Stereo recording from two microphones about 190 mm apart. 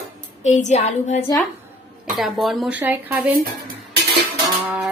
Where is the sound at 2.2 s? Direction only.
Centre (ahead or behind).